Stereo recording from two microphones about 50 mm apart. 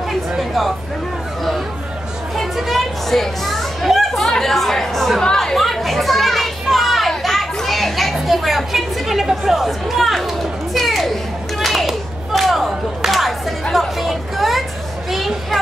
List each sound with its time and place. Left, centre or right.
0.4 s speech: centre
2.3 s speech: centre
5.2 s children playing: centre
15.0 s speech: centre